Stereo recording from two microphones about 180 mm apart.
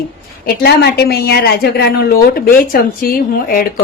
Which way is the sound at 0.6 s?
65° left (ahead or behind).